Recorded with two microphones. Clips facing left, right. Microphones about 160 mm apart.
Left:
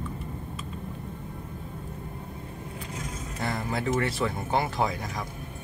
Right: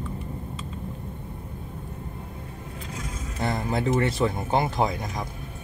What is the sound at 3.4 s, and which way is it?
Speech, 25° right (ahead or behind).